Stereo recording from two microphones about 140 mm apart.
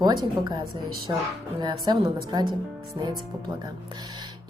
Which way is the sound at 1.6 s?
30° right (ahead or behind).